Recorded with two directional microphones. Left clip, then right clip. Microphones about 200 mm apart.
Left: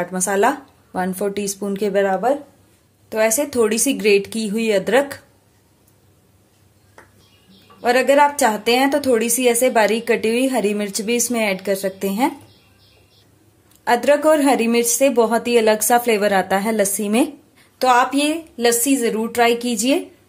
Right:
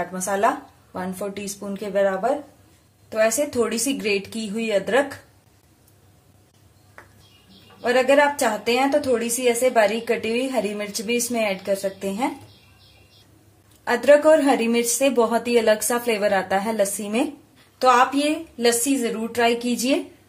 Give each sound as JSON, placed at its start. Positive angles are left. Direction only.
{"t": 0.0, "sound": "a woman's voice", "side_deg": 50}
{"t": 3.1, "sound": "a woman's voice", "side_deg": 40}
{"t": 7.8, "sound": "a woman's voice", "side_deg": 40}
{"t": 13.8, "sound": "speech", "side_deg": 35}